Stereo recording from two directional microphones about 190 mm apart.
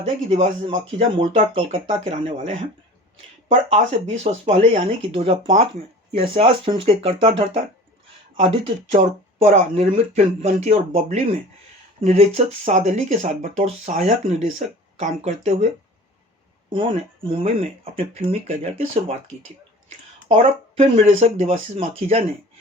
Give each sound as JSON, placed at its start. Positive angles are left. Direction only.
{"t": 0.3, "sound": "speech", "side_deg": -35}
{"t": 16.7, "sound": "speech", "side_deg": -25}
{"t": 20.2, "sound": "speech", "side_deg": -35}